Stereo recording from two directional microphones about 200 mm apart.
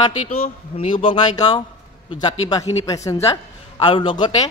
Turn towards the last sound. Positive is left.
turn(degrees=25)  # may be behind; listen again after turning